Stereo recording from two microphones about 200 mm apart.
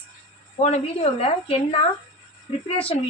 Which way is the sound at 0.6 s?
30° left (ahead or behind).